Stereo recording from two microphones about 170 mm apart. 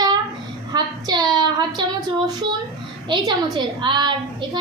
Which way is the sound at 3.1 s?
25° right (ahead or behind).